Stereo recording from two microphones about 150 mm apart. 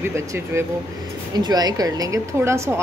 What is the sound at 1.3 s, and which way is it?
A woman's voice, 25° right (ahead or behind).